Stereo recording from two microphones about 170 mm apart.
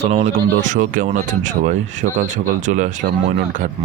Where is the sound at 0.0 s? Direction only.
40° right (ahead or behind).